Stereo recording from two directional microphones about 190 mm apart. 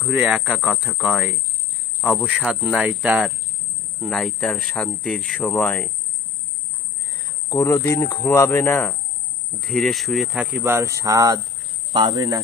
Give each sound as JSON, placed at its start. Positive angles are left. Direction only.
{"t": 0.0, "sound": "speech", "side_deg": -5}
{"t": 7.1, "sound": "speech", "side_deg": 20}
{"t": 9.6, "sound": "speech", "side_deg": 0}